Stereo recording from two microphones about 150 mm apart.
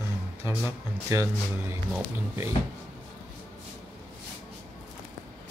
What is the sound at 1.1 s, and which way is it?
Speech, 20° right (ahead or behind).